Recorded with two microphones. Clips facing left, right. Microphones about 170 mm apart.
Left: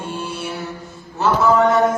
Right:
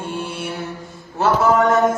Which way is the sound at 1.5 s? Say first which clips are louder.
Left 1 dB; 45° right (ahead or behind).